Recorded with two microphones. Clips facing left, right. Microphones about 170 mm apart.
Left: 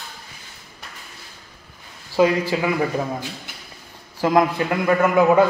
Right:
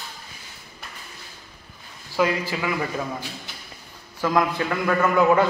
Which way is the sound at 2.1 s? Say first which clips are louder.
Left 5 dB; 25° left (ahead or behind).